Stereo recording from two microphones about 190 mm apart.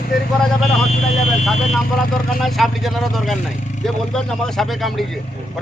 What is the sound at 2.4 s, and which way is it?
Speech, centre (ahead or behind).